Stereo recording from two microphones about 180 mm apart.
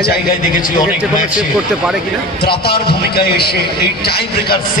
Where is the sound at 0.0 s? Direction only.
55° left (ahead or behind).